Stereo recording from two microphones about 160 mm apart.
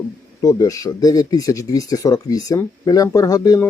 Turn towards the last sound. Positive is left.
turn(degrees=25)  # may be behind; listen again after turning